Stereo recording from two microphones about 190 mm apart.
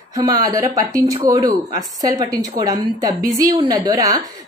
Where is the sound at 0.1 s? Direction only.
20° right (ahead or behind).